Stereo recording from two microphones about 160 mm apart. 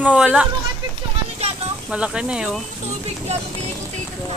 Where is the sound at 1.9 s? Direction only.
5° right (ahead or behind).